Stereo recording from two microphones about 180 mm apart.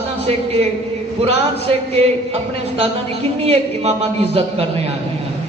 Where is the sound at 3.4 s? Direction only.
35° right (ahead or behind).